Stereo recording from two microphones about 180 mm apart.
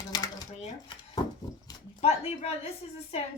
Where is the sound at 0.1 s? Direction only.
20° left (ahead or behind).